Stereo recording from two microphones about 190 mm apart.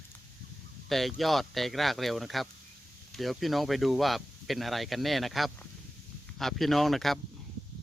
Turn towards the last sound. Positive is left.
turn(degrees=0)  # may be behind; listen again after turning